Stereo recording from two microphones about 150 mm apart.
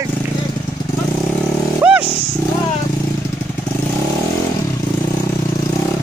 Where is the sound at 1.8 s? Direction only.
10° right (ahead or behind).